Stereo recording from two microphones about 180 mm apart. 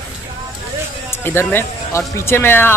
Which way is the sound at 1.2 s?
10° left (ahead or behind).